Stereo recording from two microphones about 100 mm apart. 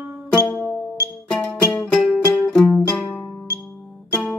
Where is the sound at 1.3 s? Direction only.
10° left (ahead or behind).